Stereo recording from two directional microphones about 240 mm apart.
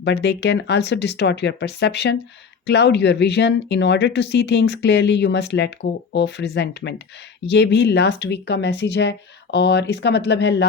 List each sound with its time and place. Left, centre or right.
0.0 s speech: left